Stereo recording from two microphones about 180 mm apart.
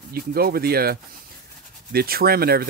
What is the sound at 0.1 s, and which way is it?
Speech, 55° right (ahead or behind).